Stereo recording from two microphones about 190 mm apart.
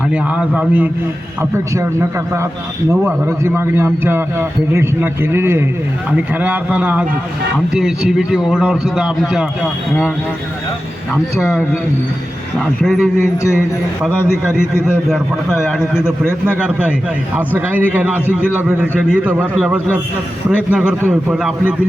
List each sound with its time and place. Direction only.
0.1 s a man's voice: 5° right (ahead or behind)
11.3 s a man's voice: centre (ahead or behind)
14.6 s a man's voice: 15° left (ahead or behind)
15.1 s a man's voice: centre (ahead or behind)
15.8 s a man's voice: 15° left (ahead or behind)
16.5 s a man's voice: 5° right (ahead or behind)